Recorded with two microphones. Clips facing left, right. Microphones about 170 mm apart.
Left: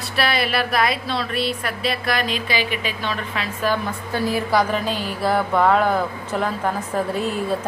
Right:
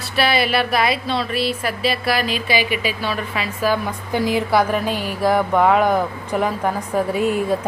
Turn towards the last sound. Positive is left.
turn(degrees=-10)  # may be behind; listen again after turning